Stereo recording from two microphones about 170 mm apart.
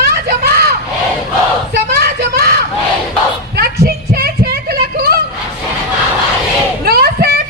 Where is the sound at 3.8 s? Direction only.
65° right (ahead or behind).